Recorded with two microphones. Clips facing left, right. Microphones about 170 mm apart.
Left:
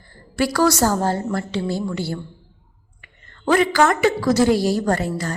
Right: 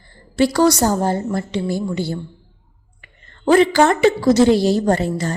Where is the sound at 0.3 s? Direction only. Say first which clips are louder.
Right 3 dB; 25° right (ahead or behind).